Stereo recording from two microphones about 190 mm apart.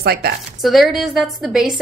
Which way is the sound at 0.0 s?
55° right (ahead or behind).